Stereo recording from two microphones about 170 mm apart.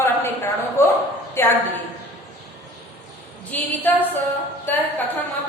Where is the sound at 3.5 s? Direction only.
10° left (ahead or behind).